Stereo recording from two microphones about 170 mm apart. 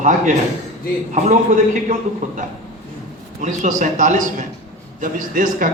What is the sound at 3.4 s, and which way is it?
A man's voice, 45° right (ahead or behind).